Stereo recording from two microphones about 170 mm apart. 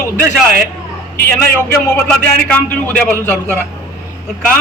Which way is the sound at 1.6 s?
10° left (ahead or behind).